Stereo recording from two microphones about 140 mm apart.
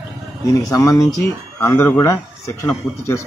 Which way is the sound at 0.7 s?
25° left (ahead or behind).